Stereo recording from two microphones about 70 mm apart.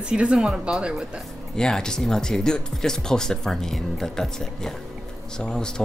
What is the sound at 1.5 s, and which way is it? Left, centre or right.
Speech, centre.